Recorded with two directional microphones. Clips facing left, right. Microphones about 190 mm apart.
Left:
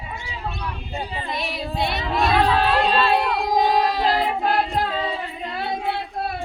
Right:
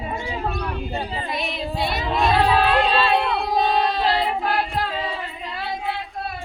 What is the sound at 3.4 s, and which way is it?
Singing, 15° left (ahead or behind).